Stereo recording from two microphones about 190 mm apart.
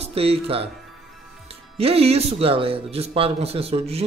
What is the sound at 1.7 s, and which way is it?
Speech, 30° right (ahead or behind).